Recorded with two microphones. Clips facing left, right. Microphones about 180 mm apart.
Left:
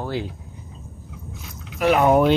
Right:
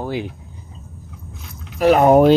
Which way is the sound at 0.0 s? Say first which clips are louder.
Right 3 dB; 15° right (ahead or behind).